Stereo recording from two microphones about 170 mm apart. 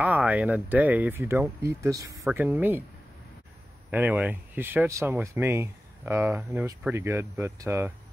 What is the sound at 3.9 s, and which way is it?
Speech, 10° right (ahead or behind).